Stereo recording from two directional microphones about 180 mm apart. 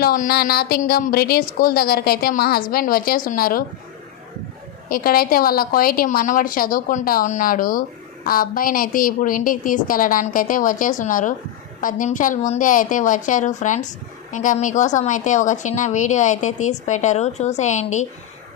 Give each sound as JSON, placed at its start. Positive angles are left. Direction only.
{"t": 0.0, "sound": "a woman's voice", "side_deg": 55}
{"t": 4.9, "sound": "a woman's voice", "side_deg": 55}